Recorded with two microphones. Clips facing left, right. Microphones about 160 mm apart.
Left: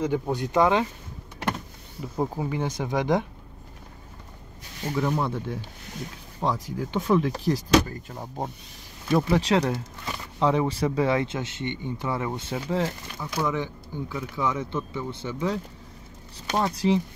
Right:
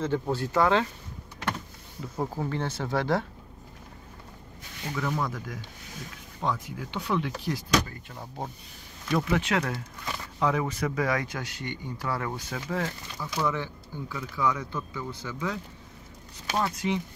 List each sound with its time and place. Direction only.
0.0 s speech: 15° left (ahead or behind)
2.0 s speech: 15° left (ahead or behind)
4.8 s speech: 25° left (ahead or behind)